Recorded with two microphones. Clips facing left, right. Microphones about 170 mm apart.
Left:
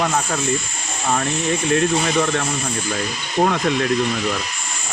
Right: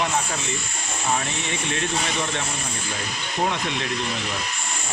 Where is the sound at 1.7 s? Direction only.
45° left (ahead or behind).